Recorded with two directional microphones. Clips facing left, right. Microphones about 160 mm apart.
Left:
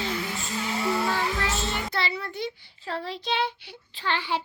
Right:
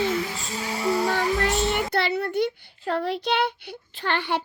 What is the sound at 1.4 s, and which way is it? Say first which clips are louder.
A child's voice: right 6 dB; 60° right (ahead or behind).